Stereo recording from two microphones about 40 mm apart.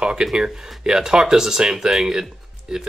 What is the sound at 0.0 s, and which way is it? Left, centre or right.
Speech, centre.